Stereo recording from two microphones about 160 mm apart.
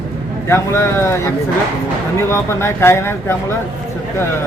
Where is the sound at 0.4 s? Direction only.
15° left (ahead or behind).